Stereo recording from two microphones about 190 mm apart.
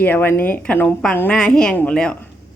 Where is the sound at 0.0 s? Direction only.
10° left (ahead or behind).